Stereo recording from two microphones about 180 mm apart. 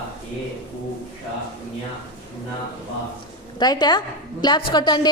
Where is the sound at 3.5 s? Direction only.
20° left (ahead or behind).